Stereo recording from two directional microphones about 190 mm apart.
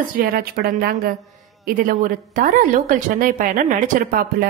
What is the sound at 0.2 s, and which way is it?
A woman's voice, 50° right (ahead or behind).